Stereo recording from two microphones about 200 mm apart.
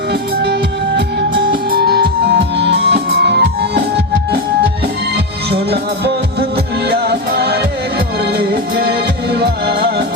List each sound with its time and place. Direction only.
0.1 s music: 55° right (ahead or behind)
5.1 s music: 55° right (ahead or behind)